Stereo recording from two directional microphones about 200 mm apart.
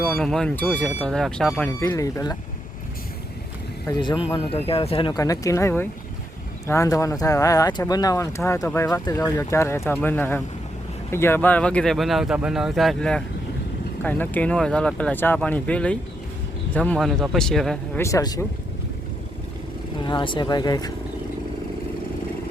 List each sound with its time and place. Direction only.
0.0 s speech: centre (ahead or behind)
1.9 s speech: 15° left (ahead or behind)
3.8 s speech: 20° left (ahead or behind); by 18.0 s centre (ahead or behind)
18.0 s speech: 15° left (ahead or behind)
20.1 s speech: 25° left (ahead or behind)